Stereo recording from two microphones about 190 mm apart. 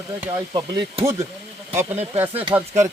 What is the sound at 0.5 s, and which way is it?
Speech, 20° right (ahead or behind).